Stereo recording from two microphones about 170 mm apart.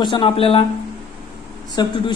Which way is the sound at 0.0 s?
30° left (ahead or behind).